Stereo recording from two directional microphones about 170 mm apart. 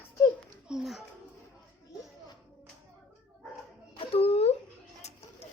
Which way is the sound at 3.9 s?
35° left (ahead or behind).